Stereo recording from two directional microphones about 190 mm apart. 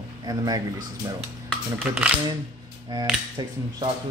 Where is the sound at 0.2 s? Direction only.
20° right (ahead or behind).